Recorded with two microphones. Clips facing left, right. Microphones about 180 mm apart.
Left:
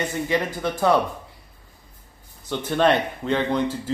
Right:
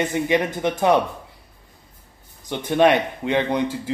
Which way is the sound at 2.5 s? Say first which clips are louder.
Right 3 dB; 15° right (ahead or behind).